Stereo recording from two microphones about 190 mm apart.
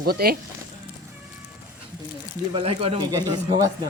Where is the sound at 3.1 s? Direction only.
20° right (ahead or behind).